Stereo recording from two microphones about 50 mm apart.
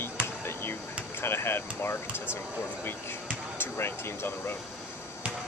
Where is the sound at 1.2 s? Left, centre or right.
Left.